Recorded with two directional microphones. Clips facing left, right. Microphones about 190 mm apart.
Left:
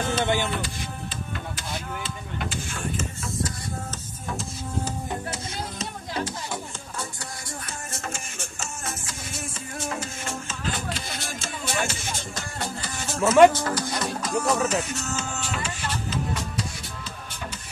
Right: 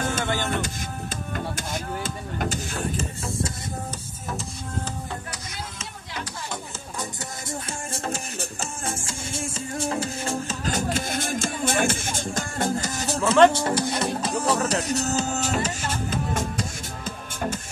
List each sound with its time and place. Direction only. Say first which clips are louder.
0.2 s music: left 3 dB; 15° left (ahead or behind)
1.3 s a sound: right 6 dB; 45° right (ahead or behind)
5.3 s music: left 4 dB; 30° left (ahead or behind)
7.0 s music: right 2 dB; 25° right (ahead or behind)
13.2 s speech: left 2 dB; 5° left (ahead or behind)
13.5 s music: right 3 dB; 30° right (ahead or behind); by 17.6 s 50° right (ahead or behind)